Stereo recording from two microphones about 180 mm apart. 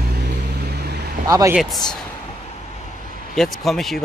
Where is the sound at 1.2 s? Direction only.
20° right (ahead or behind).